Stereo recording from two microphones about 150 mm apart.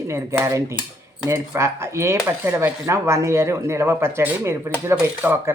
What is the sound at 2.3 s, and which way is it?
Speech, 15° right (ahead or behind).